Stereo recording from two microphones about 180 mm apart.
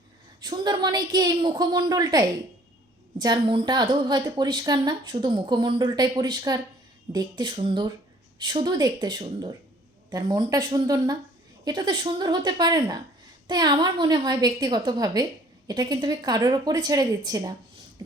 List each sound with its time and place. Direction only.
0.4 s a woman's voice: 25° right (ahead or behind)